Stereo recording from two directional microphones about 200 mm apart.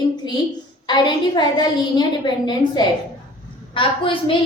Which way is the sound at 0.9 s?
20° left (ahead or behind).